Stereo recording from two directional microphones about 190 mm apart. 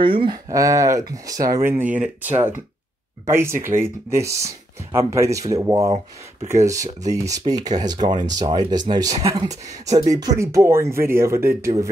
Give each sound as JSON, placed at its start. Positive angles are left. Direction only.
{"t": 0.0, "sound": "speech", "side_deg": -25}